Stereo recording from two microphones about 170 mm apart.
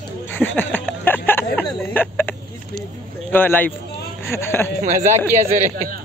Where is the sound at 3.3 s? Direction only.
10° left (ahead or behind).